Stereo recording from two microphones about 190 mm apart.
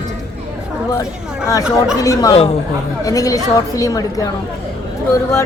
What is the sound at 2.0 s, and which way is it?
Speech, 20° left (ahead or behind).